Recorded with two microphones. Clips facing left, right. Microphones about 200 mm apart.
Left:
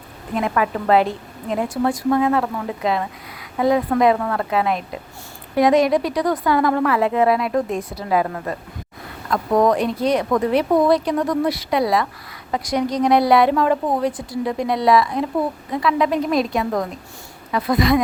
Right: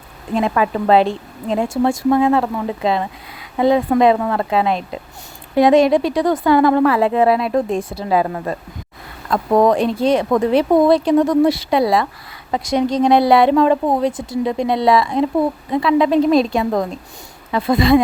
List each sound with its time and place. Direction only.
0.3 s speech: 25° right (ahead or behind)